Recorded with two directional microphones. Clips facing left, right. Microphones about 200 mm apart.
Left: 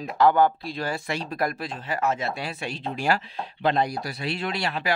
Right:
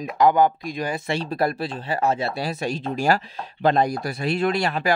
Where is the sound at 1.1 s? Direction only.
30° right (ahead or behind).